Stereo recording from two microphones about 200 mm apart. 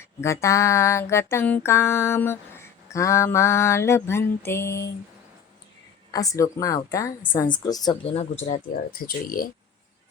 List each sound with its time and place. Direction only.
0.2 s music: 15° left (ahead or behind)
6.1 s music: 15° left (ahead or behind)
7.3 s a woman's voice: 20° left (ahead or behind)
8.1 s speech: 35° left (ahead or behind)
8.7 s speech: 45° left (ahead or behind)